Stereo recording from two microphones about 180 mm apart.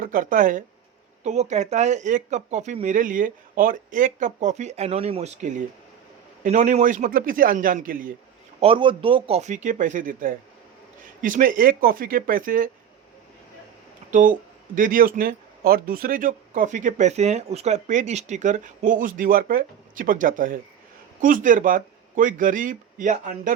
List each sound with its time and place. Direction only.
0.0 s speech: 45° right (ahead or behind)
8.6 s speech: 30° right (ahead or behind); by 12.7 s 50° right (ahead or behind)
14.1 s speech: 45° right (ahead or behind)